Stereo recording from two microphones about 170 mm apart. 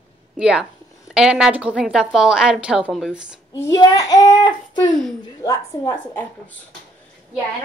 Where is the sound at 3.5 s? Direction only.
20° left (ahead or behind).